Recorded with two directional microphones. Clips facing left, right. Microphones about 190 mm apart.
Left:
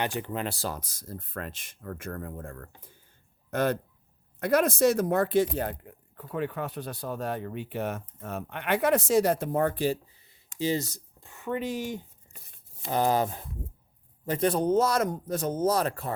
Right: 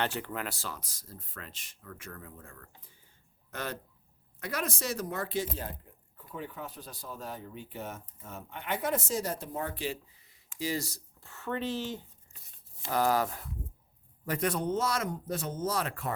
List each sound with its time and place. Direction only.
0.0 s speech: 15° left (ahead or behind); by 5.7 s 60° left (ahead or behind)
5.8 s speech: 75° left (ahead or behind); by 10.3 s 35° left (ahead or behind)
10.6 s speech: 25° left (ahead or behind)
12.9 s speech: 25° left (ahead or behind)